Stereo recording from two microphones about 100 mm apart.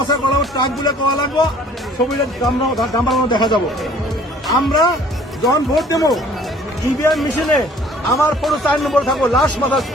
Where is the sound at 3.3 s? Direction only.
45° left (ahead or behind).